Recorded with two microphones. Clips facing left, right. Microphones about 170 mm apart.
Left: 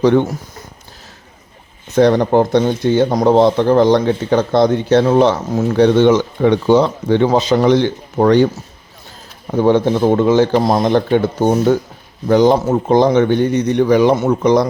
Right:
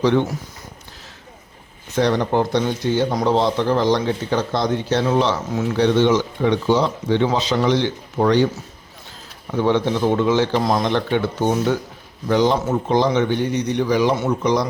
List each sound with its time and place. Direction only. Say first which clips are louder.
0.0 s speech: left 5 dB; 50° left (ahead or behind)
2.0 s speech: left 7 dB; 50° left (ahead or behind)
9.5 s speech: left 6 dB; 45° left (ahead or behind)
10.6 s speech: left 5 dB; 35° left (ahead or behind); by 14.7 s 55° left (ahead or behind)